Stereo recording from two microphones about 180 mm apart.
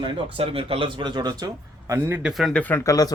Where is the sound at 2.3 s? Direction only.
5° left (ahead or behind); by 3.1 s 20° left (ahead or behind).